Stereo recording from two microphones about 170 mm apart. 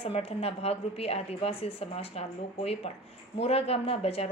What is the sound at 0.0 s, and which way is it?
A woman's voice, 35° left (ahead or behind).